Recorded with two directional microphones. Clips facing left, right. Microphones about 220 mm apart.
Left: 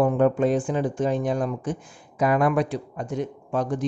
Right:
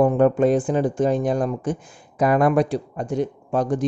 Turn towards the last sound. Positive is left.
turn(degrees=-35)  # may be behind; listen again after turning